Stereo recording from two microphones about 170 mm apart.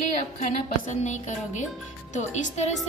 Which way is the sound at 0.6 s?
45° left (ahead or behind).